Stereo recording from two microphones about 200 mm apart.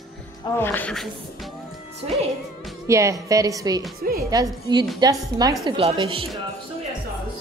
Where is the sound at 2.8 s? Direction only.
15° right (ahead or behind).